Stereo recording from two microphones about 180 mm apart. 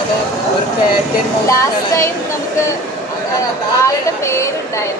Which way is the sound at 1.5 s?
15° left (ahead or behind).